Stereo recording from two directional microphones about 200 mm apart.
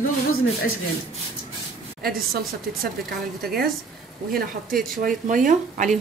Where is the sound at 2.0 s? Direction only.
50° right (ahead or behind).